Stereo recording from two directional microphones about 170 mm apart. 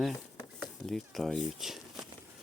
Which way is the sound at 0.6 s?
Centre (ahead or behind).